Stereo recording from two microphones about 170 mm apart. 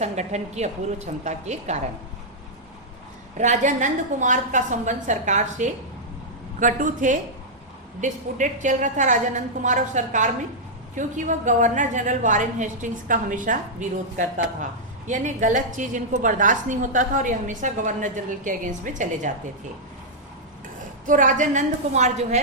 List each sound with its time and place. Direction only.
0.0 s a woman's voice: 40° right (ahead or behind)
3.3 s a woman's voice: 45° right (ahead or behind)
21.1 s a woman's voice: 50° right (ahead or behind)